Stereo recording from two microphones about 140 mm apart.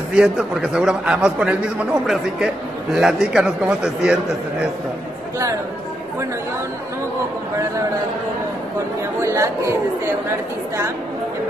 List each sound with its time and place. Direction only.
0.1 s a man's voice: 5° right (ahead or behind)
9.2 s speech: 20° right (ahead or behind)